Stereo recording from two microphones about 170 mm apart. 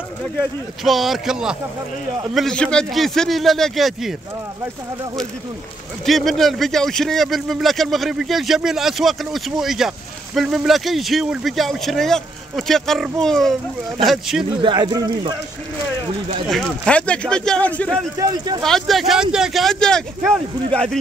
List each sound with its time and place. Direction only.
0.8 s speech: centre (ahead or behind)
6.0 s speech: centre (ahead or behind)
14.6 s speech: 25° right (ahead or behind)
16.4 s speech: centre (ahead or behind)
18.2 s speech: 25° right (ahead or behind)
18.6 s speech: centre (ahead or behind)